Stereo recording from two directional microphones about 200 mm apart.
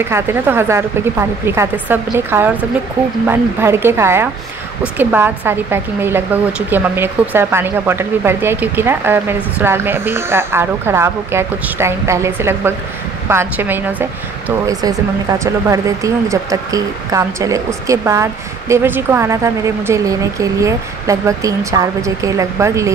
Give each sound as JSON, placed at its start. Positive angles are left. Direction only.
{"t": 0.0, "sound": "speech", "side_deg": -10}